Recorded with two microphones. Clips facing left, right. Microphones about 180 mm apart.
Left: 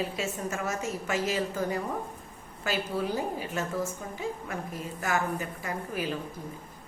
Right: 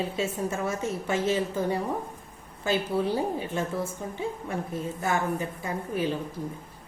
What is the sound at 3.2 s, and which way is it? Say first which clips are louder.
A woman's voice: right 3 dB; 30° right (ahead or behind).